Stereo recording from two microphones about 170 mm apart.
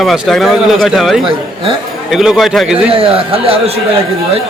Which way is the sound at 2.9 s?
35° right (ahead or behind).